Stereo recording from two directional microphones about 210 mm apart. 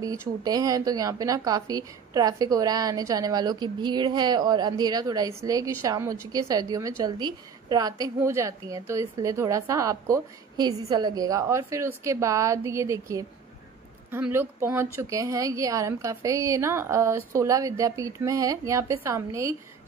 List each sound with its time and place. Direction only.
0.0 s speech: 15° right (ahead or behind)